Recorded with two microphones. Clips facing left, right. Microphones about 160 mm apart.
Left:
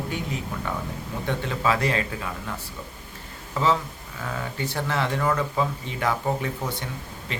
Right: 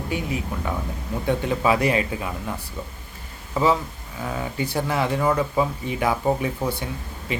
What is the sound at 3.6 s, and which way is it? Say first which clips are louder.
Speech: right 3 dB; 10° right (ahead or behind).